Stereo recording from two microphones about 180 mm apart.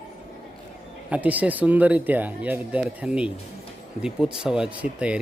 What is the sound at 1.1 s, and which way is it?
Speech, 10° right (ahead or behind).